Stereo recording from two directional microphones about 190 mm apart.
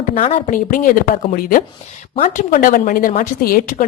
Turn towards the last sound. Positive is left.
turn(degrees=50)  # may be behind; listen again after turning